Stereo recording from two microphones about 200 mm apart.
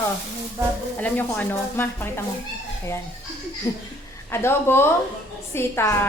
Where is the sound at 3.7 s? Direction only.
20° left (ahead or behind).